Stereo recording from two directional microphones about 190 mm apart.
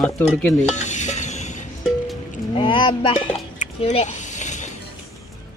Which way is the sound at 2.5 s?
25° left (ahead or behind).